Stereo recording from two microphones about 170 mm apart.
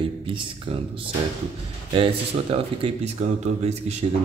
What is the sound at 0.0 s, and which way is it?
Speech, 30° right (ahead or behind).